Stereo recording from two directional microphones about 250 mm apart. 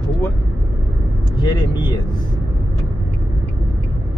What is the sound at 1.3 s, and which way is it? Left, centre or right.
Speech, centre.